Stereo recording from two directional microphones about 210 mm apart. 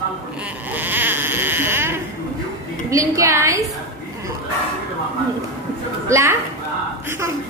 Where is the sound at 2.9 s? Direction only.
15° right (ahead or behind).